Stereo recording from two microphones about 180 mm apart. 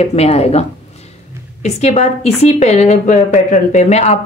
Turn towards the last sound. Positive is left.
turn(degrees=35)  # may be behind; listen again after turning